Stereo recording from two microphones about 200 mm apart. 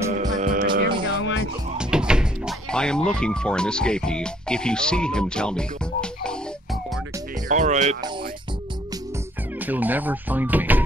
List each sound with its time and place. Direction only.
0.4 s hum: 45° right (ahead or behind)
1.2 s music: 75° left (ahead or behind)
1.8 s speech: 5° right (ahead or behind)
7.4 s speech: 40° right (ahead or behind)
9.7 s speech: 10° right (ahead or behind)